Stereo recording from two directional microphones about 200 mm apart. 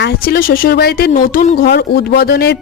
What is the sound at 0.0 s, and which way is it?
Speech, 50° left (ahead or behind).